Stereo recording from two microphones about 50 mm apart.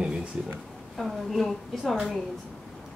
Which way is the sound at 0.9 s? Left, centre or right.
Centre.